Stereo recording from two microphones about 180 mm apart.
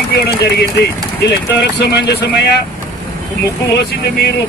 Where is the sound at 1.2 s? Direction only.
70° left (ahead or behind).